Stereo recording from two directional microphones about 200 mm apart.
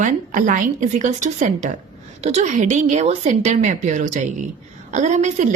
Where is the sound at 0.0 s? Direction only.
40° right (ahead or behind).